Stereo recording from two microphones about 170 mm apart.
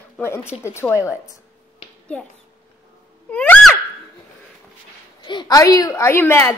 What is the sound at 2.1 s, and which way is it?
Speech, 5° left (ahead or behind).